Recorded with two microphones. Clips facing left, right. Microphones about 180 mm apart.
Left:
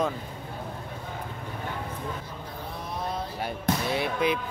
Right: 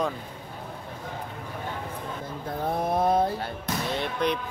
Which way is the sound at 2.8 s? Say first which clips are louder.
Right 10 dB; 50° right (ahead or behind).